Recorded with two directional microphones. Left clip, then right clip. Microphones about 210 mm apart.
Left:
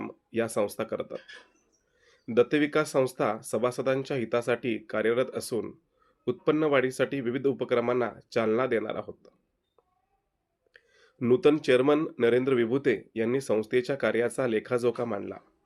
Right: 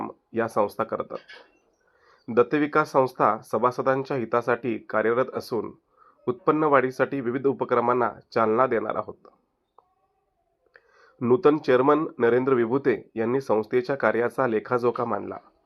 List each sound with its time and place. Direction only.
0.3 s speech: 20° left (ahead or behind)
10.7 s speech: 15° left (ahead or behind)